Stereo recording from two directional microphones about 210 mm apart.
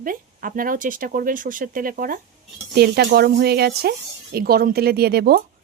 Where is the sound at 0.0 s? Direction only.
40° right (ahead or behind).